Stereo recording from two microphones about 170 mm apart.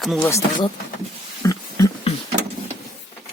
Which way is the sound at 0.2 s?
15° left (ahead or behind).